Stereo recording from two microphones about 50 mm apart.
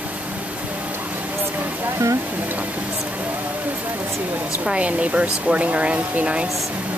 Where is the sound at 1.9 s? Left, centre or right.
Right.